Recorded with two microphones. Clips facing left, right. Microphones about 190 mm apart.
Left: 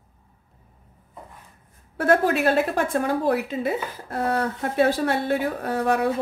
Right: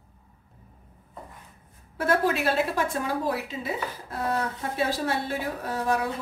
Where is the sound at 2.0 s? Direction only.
50° left (ahead or behind).